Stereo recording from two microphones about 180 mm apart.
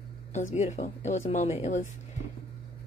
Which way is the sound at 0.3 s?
40° left (ahead or behind).